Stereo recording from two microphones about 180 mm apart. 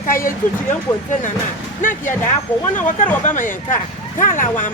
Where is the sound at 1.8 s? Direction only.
45° left (ahead or behind).